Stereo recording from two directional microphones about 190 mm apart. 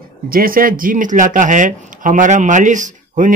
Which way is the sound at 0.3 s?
50° right (ahead or behind).